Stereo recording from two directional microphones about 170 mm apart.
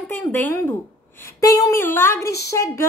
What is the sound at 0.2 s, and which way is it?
A woman's voice, 10° left (ahead or behind).